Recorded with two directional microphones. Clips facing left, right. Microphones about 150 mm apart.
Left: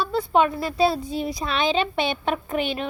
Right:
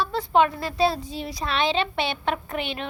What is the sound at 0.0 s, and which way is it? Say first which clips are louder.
A woman's voice: left 1 dB; 10° left (ahead or behind).